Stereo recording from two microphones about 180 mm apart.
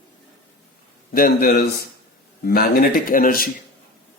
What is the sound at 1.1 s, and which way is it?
Speech, 55° left (ahead or behind).